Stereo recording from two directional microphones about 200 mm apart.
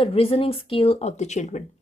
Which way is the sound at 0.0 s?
30° left (ahead or behind).